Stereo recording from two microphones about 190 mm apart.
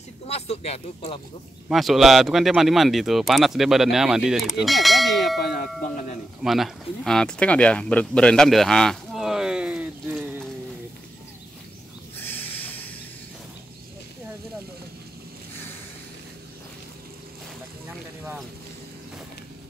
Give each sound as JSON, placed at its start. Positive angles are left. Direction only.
{"t": 0.3, "sound": "speech", "side_deg": 35}
{"t": 1.7, "sound": "speech", "side_deg": 0}
{"t": 5.4, "sound": "speech", "side_deg": 55}
{"t": 6.4, "sound": "speech", "side_deg": 0}
{"t": 12.2, "sound": "a sound", "side_deg": 10}